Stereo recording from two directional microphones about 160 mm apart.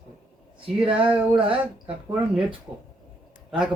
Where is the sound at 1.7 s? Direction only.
5° right (ahead or behind).